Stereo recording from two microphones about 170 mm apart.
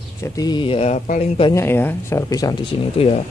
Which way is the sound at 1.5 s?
15° left (ahead or behind).